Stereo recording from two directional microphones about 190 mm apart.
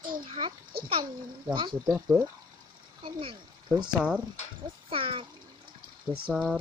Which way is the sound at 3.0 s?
30° right (ahead or behind).